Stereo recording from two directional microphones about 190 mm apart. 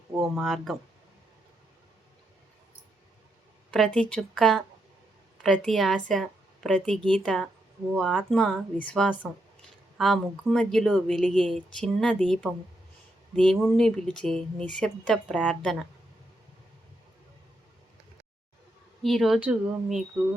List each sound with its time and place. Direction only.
0.2 s speech: centre (ahead or behind)
3.7 s a woman's voice: 5° left (ahead or behind)
19.0 s speech: centre (ahead or behind)